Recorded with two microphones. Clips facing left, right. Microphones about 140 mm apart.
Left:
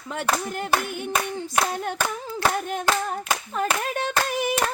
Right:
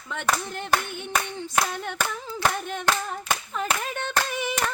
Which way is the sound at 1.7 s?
40° left (ahead or behind).